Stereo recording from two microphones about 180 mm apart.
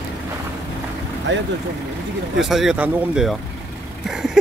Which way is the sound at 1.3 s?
80° right.